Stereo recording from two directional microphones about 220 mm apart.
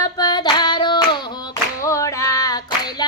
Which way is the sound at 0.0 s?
20° left (ahead or behind).